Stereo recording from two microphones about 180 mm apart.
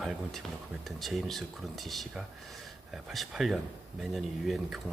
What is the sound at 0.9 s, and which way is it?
Speech, centre (ahead or behind).